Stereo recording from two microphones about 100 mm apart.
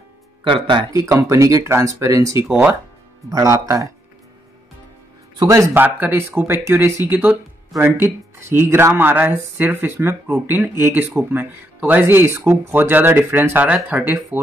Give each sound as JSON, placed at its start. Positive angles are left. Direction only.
{"t": 0.4, "sound": "speech", "side_deg": -55}
{"t": 0.9, "sound": "speech", "side_deg": -35}
{"t": 2.4, "sound": "speech", "side_deg": -10}
{"t": 3.3, "sound": "speech", "side_deg": -35}
{"t": 5.5, "sound": "speech", "side_deg": -25}